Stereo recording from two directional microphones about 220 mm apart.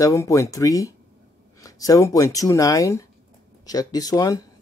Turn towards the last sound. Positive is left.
turn(degrees=15)  # may be behind; listen again after turning